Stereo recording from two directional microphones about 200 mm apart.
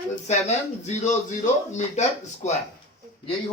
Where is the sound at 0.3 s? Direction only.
35° left (ahead or behind).